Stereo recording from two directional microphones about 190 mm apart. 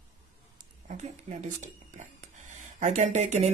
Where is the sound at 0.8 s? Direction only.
40° right (ahead or behind).